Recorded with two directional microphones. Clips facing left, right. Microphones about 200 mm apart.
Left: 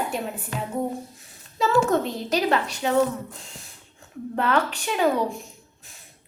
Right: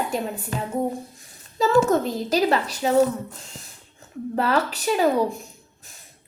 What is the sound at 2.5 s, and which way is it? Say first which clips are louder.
Speech: right 1 dB; 40° right (ahead or behind).